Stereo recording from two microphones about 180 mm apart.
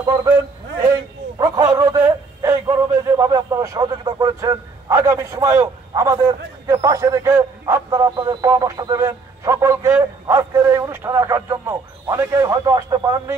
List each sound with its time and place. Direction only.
0.0 s a man's voice: 20° right (ahead or behind)
1.4 s speech: 20° right (ahead or behind)